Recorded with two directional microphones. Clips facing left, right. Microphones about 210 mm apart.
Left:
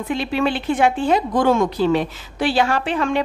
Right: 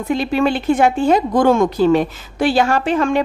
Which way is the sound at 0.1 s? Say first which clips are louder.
Right 4 dB; 45° right (ahead or behind).